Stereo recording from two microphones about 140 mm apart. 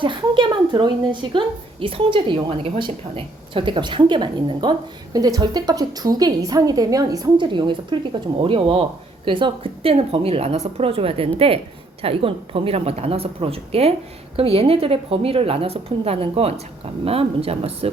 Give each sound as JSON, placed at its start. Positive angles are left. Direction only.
{"t": 0.0, "sound": "a woman's voice", "side_deg": -35}